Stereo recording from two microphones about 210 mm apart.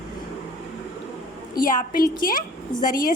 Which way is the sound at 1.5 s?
45° left (ahead or behind).